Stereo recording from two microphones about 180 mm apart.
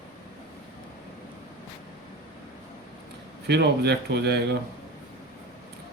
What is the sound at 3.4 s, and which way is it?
A man's voice, 70° right (ahead or behind).